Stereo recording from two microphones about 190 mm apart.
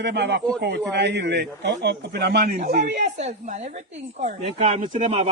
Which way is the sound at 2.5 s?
45° right (ahead or behind).